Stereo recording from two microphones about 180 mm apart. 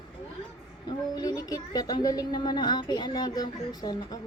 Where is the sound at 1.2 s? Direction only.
20° left (ahead or behind).